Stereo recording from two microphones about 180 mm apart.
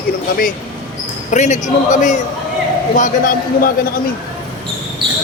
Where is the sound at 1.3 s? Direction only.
40° left (ahead or behind).